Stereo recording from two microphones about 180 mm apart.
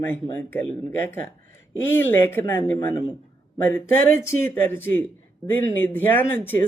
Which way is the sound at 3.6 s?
10° left (ahead or behind).